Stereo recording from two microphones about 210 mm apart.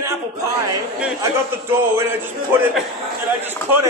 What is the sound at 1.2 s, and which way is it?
Speech, 10° right (ahead or behind).